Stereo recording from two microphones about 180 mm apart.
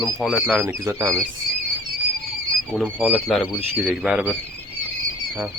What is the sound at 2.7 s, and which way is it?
A man's voice, 5° right (ahead or behind).